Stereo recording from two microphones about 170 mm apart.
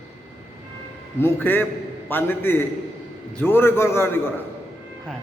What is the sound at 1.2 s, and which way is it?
A man's voice, 10° left (ahead or behind).